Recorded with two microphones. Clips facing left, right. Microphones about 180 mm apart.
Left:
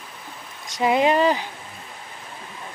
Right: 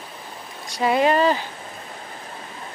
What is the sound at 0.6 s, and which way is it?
Speech, 15° left (ahead or behind).